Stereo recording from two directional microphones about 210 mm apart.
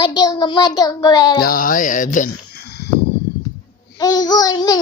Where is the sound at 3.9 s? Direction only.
20° left (ahead or behind).